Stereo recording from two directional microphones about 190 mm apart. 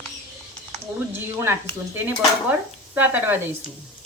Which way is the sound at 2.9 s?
10° right (ahead or behind).